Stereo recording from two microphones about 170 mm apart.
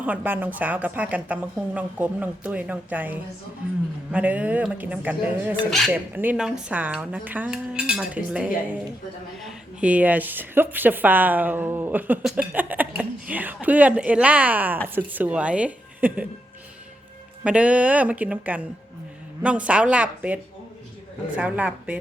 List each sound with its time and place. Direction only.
0.0 s a woman's voice: 10° right (ahead or behind)
9.8 s a woman's voice: 10° right (ahead or behind)
17.4 s a woman's voice: 5° right (ahead or behind)